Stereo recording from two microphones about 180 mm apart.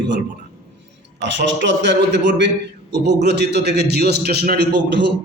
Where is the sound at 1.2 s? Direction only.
80° right.